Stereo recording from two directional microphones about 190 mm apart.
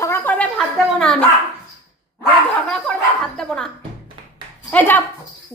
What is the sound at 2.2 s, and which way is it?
Bow-wow, 5° left (ahead or behind).